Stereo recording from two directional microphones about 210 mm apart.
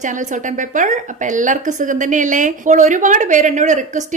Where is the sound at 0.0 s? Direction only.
35° right (ahead or behind).